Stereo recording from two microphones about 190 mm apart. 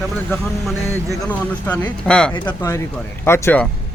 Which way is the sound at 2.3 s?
20° left (ahead or behind).